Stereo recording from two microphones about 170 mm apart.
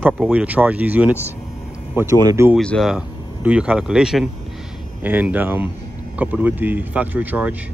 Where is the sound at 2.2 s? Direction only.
15° right (ahead or behind).